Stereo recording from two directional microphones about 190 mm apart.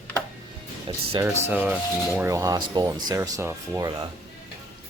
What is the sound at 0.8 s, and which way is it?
Speech, 25° right (ahead or behind).